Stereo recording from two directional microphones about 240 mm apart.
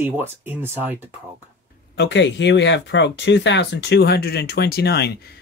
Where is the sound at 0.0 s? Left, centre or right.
Centre.